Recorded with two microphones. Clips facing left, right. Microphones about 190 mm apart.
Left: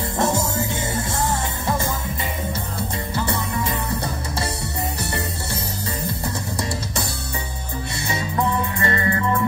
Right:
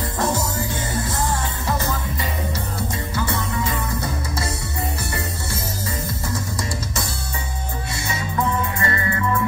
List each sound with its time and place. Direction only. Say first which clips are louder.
0.2 s music: left 2 dB; 25° left (ahead or behind)
3.7 s music: even; 30° left (ahead or behind)
8.7 s music: left 2 dB; 35° left (ahead or behind)